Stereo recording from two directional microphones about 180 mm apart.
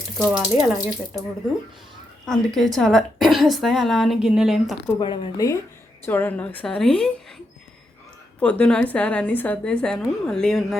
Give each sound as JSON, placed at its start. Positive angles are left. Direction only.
{"t": 0.2, "sound": "a woman's voice", "side_deg": -5}
{"t": 2.2, "sound": "a woman's voice", "side_deg": 5}
{"t": 4.9, "sound": "speech", "side_deg": 25}
{"t": 6.1, "sound": "a woman's voice", "side_deg": 10}
{"t": 8.4, "sound": "a woman's voice", "side_deg": 5}